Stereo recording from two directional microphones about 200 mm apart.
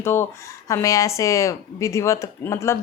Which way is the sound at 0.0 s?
10° left (ahead or behind).